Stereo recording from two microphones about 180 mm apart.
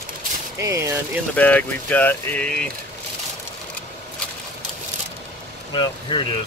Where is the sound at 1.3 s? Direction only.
10° left (ahead or behind).